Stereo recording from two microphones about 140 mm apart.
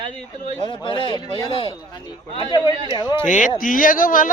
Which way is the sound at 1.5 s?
40° left (ahead or behind).